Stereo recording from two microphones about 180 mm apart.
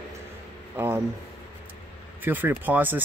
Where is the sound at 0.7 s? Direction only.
10° right (ahead or behind).